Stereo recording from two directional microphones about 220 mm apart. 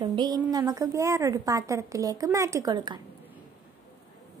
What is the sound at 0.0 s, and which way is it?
A woman's voice, 20° right (ahead or behind).